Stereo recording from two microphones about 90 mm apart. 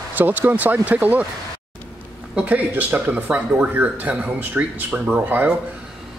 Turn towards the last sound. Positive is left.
turn(degrees=-20)  # may be behind; listen again after turning